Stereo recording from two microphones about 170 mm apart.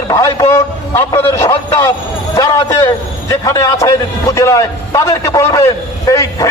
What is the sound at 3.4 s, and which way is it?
A man's voice, 20° left (ahead or behind).